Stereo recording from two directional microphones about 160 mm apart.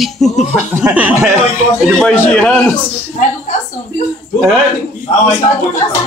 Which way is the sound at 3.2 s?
55° left (ahead or behind).